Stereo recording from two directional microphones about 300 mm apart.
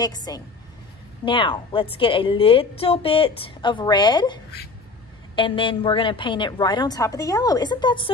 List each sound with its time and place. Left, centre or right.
0.0 s a woman's voice: centre